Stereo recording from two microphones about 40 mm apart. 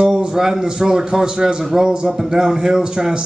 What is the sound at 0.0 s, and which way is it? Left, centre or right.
Speech, right.